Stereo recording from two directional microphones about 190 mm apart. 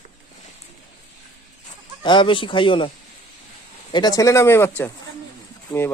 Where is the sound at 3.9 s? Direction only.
20° left (ahead or behind).